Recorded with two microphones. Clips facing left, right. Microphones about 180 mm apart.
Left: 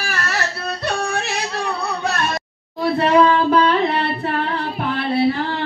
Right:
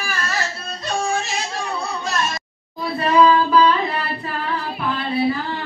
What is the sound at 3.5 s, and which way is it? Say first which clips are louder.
Music: left 1 dB; 70° left (ahead or behind).